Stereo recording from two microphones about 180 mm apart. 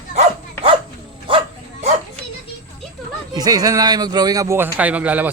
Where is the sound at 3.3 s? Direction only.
20° right (ahead or behind).